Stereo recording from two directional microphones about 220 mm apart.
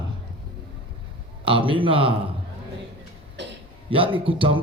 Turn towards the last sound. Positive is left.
turn(degrees=-25)  # may be behind; listen again after turning